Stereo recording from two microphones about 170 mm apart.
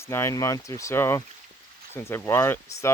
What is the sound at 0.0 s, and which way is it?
Speech, 15° left (ahead or behind).